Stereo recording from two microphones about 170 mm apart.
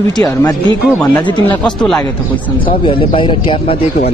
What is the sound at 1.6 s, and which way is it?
Speech, 5° left (ahead or behind).